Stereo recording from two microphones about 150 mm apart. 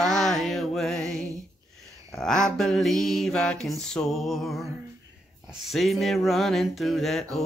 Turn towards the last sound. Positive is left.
turn(degrees=0)  # may be behind; listen again after turning